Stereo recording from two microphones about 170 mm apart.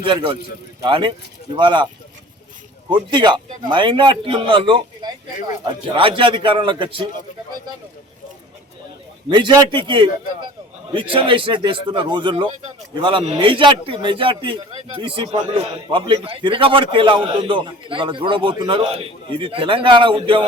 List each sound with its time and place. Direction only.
0.0 s a man's voice: 30° right (ahead or behind)
2.9 s a man's voice: 25° right (ahead or behind)
9.3 s a man's voice: 25° right (ahead or behind)